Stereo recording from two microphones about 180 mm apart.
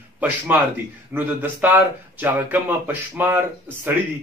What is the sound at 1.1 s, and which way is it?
Speech, 10° right (ahead or behind).